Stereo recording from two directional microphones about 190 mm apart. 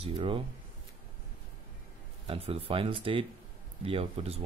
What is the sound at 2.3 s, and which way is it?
Speech, 30° right (ahead or behind).